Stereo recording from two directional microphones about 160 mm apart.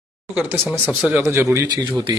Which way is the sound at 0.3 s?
10° right (ahead or behind).